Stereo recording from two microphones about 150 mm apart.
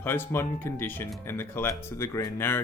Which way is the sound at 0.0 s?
15° left (ahead or behind).